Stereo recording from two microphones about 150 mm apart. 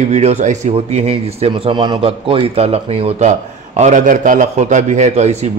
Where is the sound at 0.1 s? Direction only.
45° right (ahead or behind).